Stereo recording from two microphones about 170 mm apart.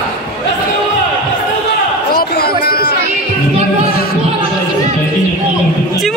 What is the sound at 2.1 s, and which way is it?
Chatter, 65° left (ahead or behind).